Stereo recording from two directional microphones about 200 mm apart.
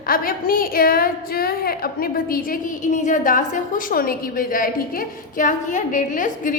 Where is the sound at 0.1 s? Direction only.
45° left (ahead or behind).